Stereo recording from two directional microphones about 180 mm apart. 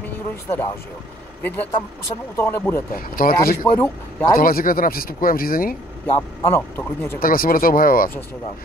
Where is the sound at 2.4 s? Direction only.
10° left (ahead or behind).